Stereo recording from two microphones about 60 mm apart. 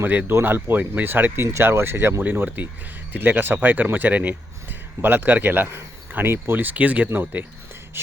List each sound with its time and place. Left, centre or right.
0.0 s speech: right
1.5 s speech: right
2.2 s speech: right
7.1 s speech: right